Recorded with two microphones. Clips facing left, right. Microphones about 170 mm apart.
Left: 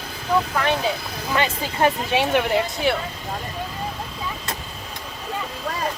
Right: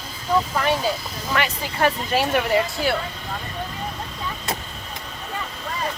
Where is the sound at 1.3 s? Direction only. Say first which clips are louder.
Left 1 dB; 20° left (ahead or behind).